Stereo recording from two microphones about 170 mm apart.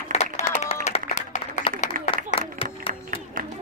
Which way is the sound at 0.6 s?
40° left (ahead or behind).